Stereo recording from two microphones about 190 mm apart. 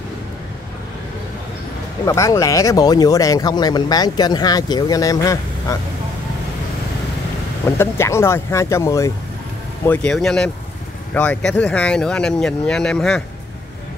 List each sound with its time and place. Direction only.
2.0 s speech: 15° left (ahead or behind)
7.6 s speech: 15° left (ahead or behind)
9.8 s speech: 5° left (ahead or behind)